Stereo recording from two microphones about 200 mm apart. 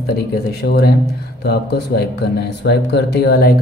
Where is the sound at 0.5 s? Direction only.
50° left (ahead or behind).